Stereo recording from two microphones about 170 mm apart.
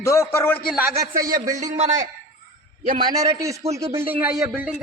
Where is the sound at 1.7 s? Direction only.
45° right (ahead or behind).